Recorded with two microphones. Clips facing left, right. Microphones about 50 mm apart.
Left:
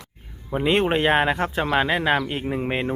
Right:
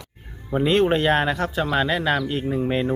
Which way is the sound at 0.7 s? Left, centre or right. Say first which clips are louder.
Even; left.